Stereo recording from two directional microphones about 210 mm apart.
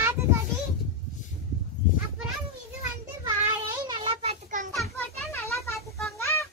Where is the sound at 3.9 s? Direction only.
25° right (ahead or behind).